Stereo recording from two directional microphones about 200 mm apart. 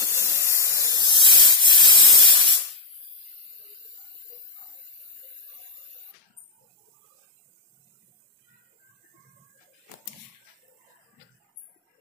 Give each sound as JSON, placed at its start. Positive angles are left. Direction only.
{"t": 0.1, "sound": "spray", "side_deg": -15}